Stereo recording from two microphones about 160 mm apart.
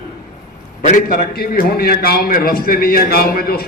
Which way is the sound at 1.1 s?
70° left (ahead or behind).